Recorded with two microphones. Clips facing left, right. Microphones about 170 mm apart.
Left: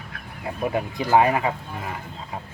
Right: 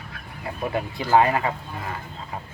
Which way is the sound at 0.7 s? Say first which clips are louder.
Even; 15° left (ahead or behind).